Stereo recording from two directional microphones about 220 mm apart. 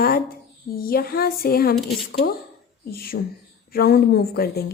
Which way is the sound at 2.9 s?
40° left (ahead or behind).